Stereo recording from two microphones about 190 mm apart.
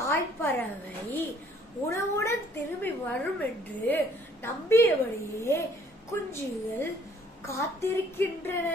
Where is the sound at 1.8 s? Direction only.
15° left (ahead or behind).